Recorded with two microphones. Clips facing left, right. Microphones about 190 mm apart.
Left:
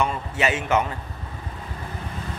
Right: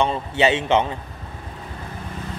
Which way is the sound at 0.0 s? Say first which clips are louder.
Right 4 dB; 30° right (ahead or behind).